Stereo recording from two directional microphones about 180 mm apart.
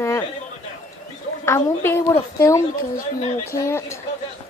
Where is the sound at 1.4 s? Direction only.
15° left (ahead or behind).